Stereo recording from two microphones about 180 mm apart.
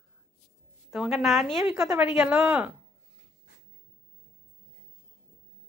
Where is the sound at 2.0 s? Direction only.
5° right (ahead or behind).